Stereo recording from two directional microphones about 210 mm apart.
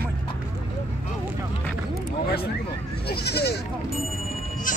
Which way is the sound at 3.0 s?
50° left (ahead or behind).